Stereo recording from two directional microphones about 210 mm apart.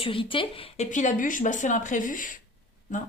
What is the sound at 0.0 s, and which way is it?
Speech, 25° left (ahead or behind).